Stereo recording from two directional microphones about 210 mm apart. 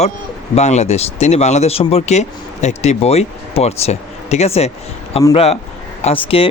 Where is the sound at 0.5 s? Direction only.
30° left (ahead or behind).